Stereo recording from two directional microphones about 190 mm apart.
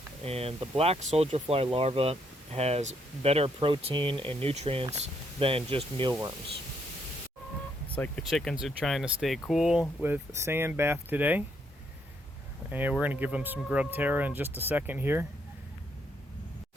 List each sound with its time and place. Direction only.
0.3 s speech: 30° right (ahead or behind)
7.9 s speech: 5° left (ahead or behind); by 11.4 s 10° right (ahead or behind)
12.7 s speech: 10° right (ahead or behind)